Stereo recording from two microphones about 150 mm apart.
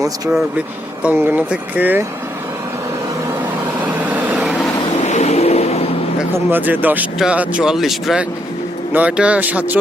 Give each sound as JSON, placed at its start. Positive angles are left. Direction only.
{"t": 1.0, "sound": "speech", "side_deg": -10}
{"t": 3.8, "sound": "vehicle", "side_deg": -10}
{"t": 5.0, "sound": "vehicle", "side_deg": 50}
{"t": 6.5, "sound": "speech", "side_deg": -10}